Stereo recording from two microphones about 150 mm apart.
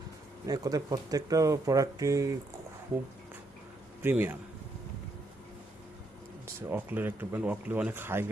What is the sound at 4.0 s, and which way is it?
Speech, 15° right (ahead or behind).